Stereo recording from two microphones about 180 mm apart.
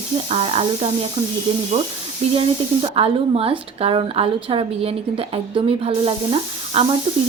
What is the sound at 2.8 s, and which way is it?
A woman's voice, 35° right (ahead or behind).